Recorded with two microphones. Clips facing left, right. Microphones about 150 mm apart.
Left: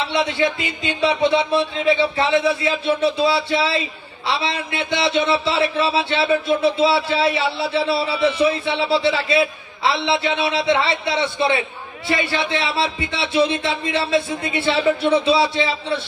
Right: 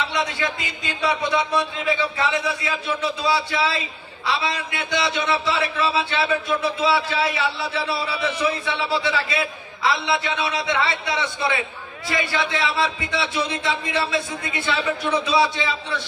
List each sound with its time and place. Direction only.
0.1 s speech: 25° left (ahead or behind)